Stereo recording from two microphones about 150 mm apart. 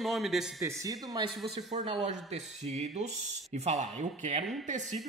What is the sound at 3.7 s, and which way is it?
Speech, 50° right (ahead or behind).